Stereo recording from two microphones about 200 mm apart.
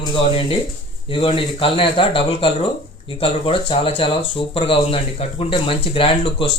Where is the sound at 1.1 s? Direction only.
25° left (ahead or behind).